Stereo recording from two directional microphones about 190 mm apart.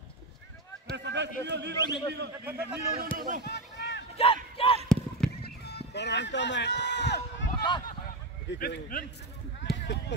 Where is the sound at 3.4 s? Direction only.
65° left (ahead or behind).